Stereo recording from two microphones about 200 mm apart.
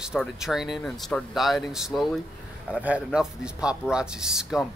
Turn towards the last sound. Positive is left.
turn(degrees=-5)  # may be behind; listen again after turning